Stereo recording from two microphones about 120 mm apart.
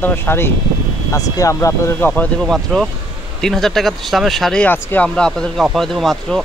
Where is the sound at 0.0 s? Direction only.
20° left (ahead or behind).